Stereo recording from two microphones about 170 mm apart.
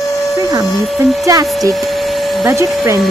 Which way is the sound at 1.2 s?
20° right (ahead or behind).